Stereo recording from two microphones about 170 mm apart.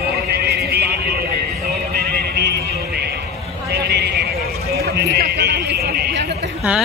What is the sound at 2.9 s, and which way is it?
Horse, 70° right (ahead or behind).